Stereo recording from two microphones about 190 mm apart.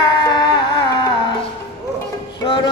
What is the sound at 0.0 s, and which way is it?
Music, 20° left (ahead or behind).